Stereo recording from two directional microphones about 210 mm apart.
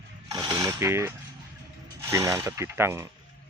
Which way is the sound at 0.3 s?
20° right (ahead or behind).